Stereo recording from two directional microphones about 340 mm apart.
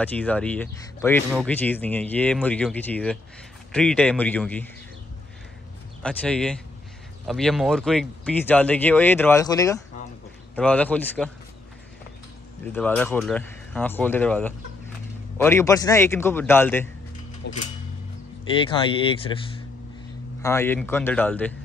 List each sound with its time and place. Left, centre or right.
0.0 s speech: centre
6.0 s speech: centre
12.7 s a man's voice: centre
17.4 s speech: left
18.5 s a man's voice: centre